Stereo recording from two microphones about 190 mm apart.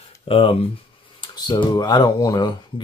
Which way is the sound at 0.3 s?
30° left (ahead or behind).